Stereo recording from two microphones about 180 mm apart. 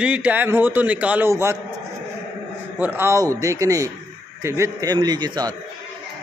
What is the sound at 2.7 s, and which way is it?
A man's voice, 10° right (ahead or behind).